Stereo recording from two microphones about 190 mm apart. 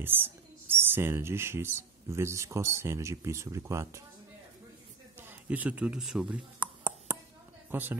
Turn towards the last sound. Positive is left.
turn(degrees=-10)  # may be behind; listen again after turning